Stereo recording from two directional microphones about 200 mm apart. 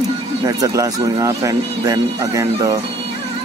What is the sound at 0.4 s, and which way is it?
Speech, 20° right (ahead or behind).